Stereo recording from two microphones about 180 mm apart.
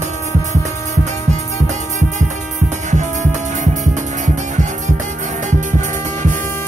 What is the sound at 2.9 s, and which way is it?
Music, 40° right (ahead or behind).